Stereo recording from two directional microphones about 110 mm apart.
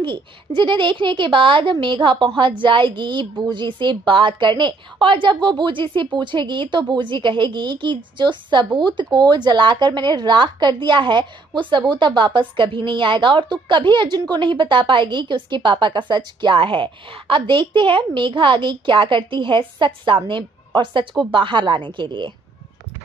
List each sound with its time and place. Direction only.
0.0 s a woman's voice: 45° right (ahead or behind)